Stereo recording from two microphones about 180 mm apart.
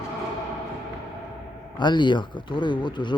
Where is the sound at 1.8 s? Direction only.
25° left (ahead or behind).